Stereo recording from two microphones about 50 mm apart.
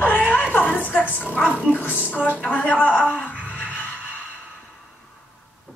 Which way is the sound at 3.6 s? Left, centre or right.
Left.